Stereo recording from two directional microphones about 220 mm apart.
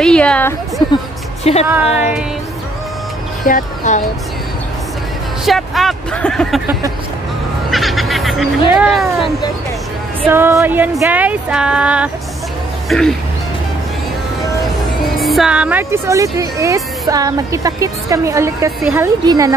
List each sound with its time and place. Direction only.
0.0 s speech: 5° left (ahead or behind)
1.4 s speech: 30° left (ahead or behind)
3.4 s speech: 35° left (ahead or behind)
5.4 s speech: centre (ahead or behind)
7.7 s fowl: centre (ahead or behind)
8.6 s speech: 5° right (ahead or behind)
10.2 s speech: 10° right (ahead or behind)
15.1 s speech: centre (ahead or behind); by 19.5 s 15° right (ahead or behind)